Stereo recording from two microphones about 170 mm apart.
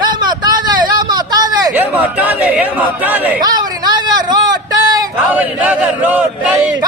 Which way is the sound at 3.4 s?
25° right (ahead or behind).